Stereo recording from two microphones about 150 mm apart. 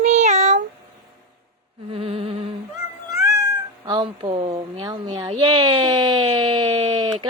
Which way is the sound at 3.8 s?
35° right (ahead or behind).